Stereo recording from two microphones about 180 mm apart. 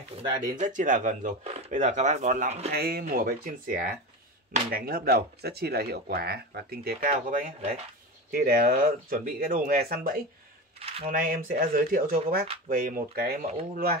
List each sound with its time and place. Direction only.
0.6 s speech: 45° right (ahead or behind)
2.7 s speech: 60° right (ahead or behind)
10.8 s speech: 35° right (ahead or behind)
11.1 s speech: 50° right (ahead or behind)